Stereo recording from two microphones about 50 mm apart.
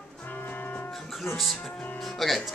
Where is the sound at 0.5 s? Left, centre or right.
Left.